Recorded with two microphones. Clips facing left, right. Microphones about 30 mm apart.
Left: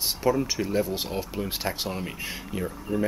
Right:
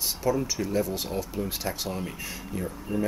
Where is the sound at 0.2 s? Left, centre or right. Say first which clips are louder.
Left 2 dB; left.